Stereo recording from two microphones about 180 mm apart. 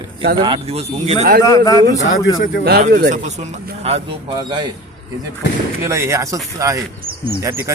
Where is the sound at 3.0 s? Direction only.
40° right (ahead or behind); by 4.7 s 25° right (ahead or behind).